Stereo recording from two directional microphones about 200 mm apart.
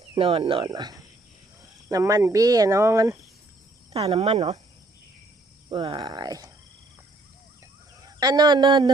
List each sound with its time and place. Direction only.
0.1 s speech: 25° right (ahead or behind)
3.9 s speech: 30° right (ahead or behind)
5.6 s speech: 25° right (ahead or behind)
8.0 s a man's voice: 20° right (ahead or behind)